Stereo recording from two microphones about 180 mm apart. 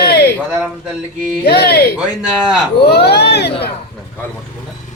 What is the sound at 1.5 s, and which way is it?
Speech, 60° left (ahead or behind).